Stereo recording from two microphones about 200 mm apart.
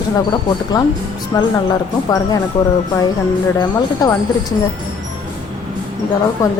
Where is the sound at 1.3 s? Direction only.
20° left (ahead or behind).